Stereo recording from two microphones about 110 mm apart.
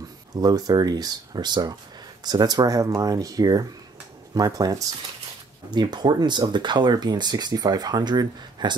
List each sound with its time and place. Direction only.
0.4 s speech: 35° right (ahead or behind)